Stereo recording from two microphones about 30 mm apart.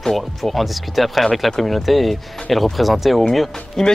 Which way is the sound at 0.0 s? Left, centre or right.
Centre.